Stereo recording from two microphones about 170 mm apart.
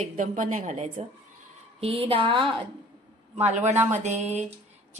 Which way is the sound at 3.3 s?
40° right (ahead or behind).